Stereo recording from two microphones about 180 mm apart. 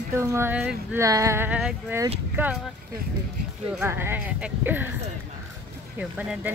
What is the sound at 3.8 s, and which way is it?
Speech, 10° right (ahead or behind).